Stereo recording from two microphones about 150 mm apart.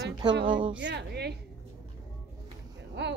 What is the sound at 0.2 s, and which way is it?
Speech, 30° right (ahead or behind).